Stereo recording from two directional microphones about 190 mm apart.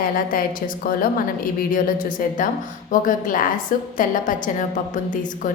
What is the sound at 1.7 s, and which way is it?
A woman's voice, 45° left (ahead or behind).